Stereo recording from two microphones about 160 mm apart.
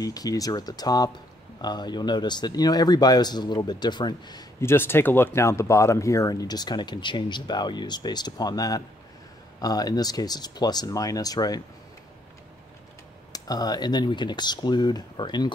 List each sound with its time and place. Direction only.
0.0 s speech: 20° left (ahead or behind)
13.3 s speech: 25° left (ahead or behind)